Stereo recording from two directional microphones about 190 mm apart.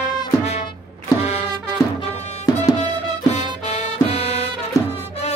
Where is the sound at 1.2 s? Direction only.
35° left (ahead or behind).